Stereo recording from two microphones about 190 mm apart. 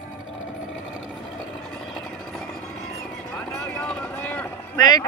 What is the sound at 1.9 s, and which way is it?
Vehicle, centre (ahead or behind).